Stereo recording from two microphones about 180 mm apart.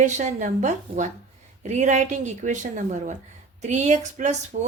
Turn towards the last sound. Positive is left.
turn(degrees=-40)  # may be behind; listen again after turning